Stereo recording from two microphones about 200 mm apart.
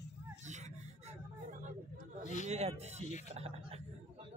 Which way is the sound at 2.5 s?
35° right (ahead or behind).